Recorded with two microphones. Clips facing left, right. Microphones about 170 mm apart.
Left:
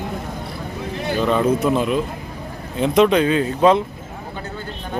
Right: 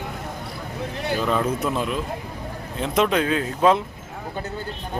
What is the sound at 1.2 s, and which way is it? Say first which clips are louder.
Speech: left 6 dB; centre (ahead or behind).